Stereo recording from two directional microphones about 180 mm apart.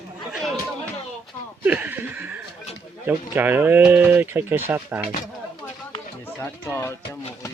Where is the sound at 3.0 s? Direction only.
10° right (ahead or behind).